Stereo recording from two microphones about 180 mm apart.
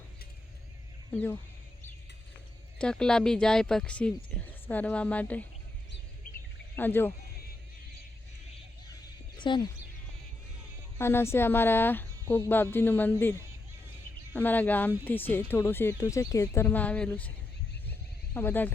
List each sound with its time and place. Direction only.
1.1 s speech: 10° left (ahead or behind)
2.7 s speech: 5° left (ahead or behind)
6.7 s speech: 10° left (ahead or behind)
9.4 s speech: 25° left (ahead or behind)
10.9 s speech: 15° left (ahead or behind)
14.3 s speech: 10° left (ahead or behind)
18.3 s speech: 10° left (ahead or behind)